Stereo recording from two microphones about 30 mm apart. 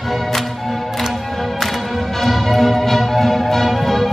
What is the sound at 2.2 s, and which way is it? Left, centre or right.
Music, centre.